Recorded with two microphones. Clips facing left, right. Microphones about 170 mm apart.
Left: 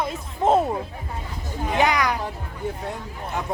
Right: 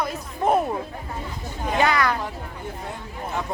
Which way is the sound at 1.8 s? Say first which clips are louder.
Even; 15° left (ahead or behind).